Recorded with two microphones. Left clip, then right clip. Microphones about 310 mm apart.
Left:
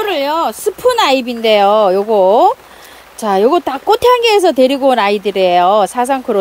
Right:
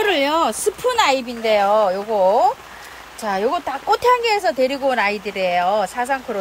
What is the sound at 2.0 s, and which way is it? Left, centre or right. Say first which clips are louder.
Speech: left 7 dB; left.